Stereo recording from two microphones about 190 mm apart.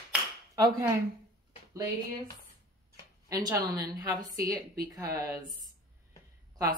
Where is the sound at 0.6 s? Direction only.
20° right (ahead or behind).